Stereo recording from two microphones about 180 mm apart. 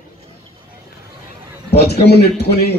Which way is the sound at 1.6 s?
65° left (ahead or behind).